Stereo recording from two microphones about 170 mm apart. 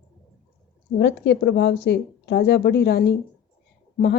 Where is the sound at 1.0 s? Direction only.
85° left.